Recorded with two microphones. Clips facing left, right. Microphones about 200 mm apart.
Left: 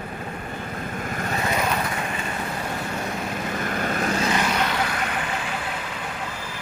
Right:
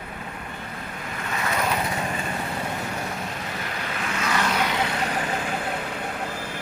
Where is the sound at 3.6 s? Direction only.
50° left (ahead or behind).